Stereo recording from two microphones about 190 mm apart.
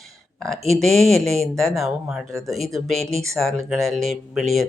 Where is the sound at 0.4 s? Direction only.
Centre (ahead or behind).